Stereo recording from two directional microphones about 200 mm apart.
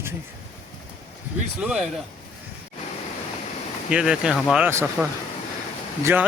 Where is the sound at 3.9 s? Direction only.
5° right (ahead or behind).